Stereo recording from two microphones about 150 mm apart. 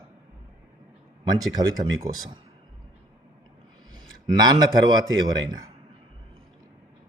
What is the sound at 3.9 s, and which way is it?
A man's voice, 30° right (ahead or behind).